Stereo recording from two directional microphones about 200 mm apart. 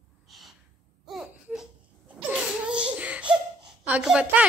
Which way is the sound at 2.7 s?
5° right (ahead or behind).